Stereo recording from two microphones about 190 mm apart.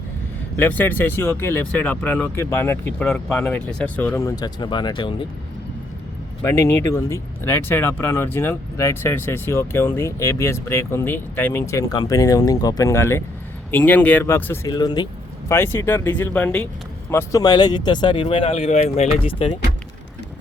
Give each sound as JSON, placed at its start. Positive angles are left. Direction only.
{"t": 0.5, "sound": "speech", "side_deg": 10}
{"t": 6.4, "sound": "speech", "side_deg": 15}